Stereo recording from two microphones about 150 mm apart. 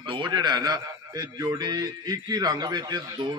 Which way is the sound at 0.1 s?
30° right (ahead or behind).